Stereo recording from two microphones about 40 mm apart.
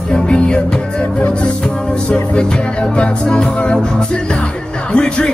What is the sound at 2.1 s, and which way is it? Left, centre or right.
Music, left.